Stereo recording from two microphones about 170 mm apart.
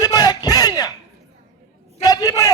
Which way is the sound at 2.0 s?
20° left (ahead or behind).